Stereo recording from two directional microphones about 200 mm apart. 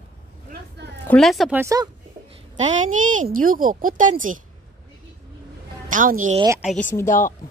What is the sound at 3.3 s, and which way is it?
Speech, 45° right (ahead or behind).